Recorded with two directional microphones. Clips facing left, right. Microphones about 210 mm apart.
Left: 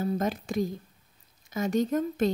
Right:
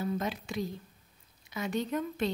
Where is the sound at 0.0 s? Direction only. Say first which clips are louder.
Left 5 dB; 45° left (ahead or behind).